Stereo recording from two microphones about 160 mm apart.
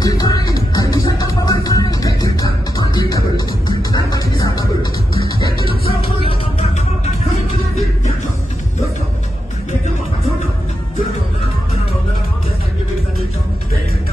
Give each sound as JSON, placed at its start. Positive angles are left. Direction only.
{"t": 0.0, "sound": "music", "side_deg": 25}
{"t": 5.9, "sound": "music", "side_deg": 35}